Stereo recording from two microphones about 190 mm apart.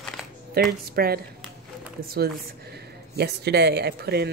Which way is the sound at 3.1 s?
60° right (ahead or behind).